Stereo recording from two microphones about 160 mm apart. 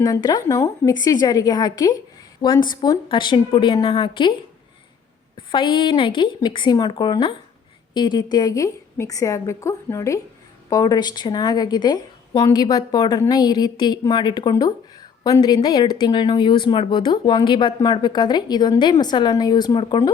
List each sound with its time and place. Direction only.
0.0 s a woman's voice: 25° left (ahead or behind)
5.5 s speech: 30° left (ahead or behind)